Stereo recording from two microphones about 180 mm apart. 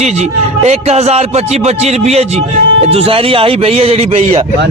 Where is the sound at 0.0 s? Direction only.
35° right (ahead or behind).